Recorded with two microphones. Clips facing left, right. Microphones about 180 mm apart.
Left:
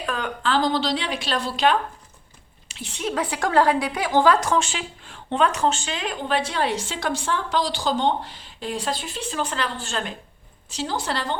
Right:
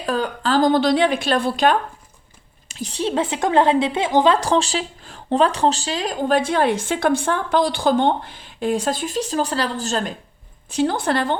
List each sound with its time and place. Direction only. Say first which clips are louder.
0.0 s a woman's voice: right 5 dB; 35° right (ahead or behind)
4.4 s speech: right 4 dB; 30° right (ahead or behind)
10.7 s a woman's voice: right 8 dB; 55° right (ahead or behind)